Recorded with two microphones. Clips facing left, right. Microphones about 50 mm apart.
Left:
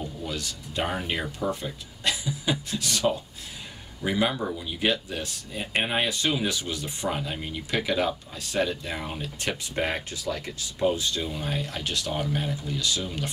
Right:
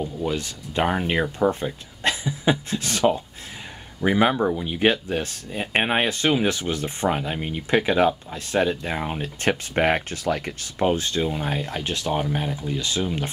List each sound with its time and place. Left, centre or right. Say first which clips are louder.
0.2 s speech: right 7 dB; right